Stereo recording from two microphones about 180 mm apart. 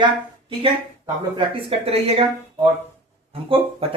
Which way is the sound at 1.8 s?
35° right (ahead or behind).